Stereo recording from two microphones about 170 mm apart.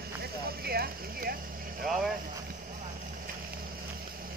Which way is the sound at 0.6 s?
65° right (ahead or behind).